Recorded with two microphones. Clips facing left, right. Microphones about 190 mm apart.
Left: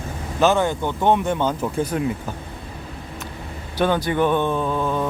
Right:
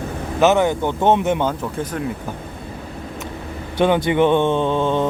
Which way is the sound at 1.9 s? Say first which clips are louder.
Left 1 dB; 10° left (ahead or behind).